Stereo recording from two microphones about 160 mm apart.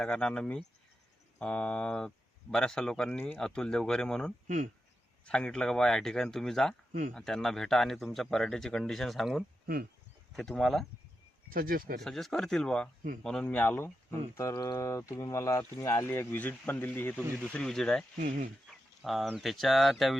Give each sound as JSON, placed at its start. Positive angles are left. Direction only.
{"t": 0.0, "sound": "speech", "side_deg": 5}
{"t": 4.4, "sound": "speech", "side_deg": -50}
{"t": 5.2, "sound": "speech", "side_deg": 5}
{"t": 11.4, "sound": "speech", "side_deg": -65}
{"t": 11.9, "sound": "speech", "side_deg": 0}
{"t": 18.7, "sound": "a sound", "side_deg": 0}
{"t": 19.3, "sound": "speech", "side_deg": 0}